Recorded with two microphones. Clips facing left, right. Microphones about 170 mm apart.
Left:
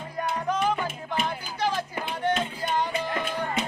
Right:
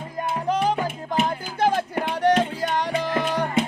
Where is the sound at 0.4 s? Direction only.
35° right (ahead or behind).